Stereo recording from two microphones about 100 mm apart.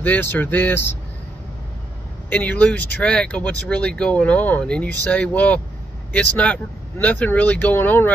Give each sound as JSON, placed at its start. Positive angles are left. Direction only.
{"t": 0.0, "sound": "speech", "side_deg": 15}
{"t": 2.2, "sound": "speech", "side_deg": 15}